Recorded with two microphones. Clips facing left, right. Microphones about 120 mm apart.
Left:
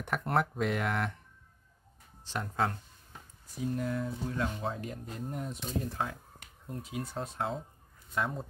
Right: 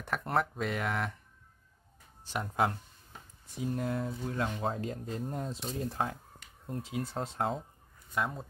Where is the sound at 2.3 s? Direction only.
15° right (ahead or behind).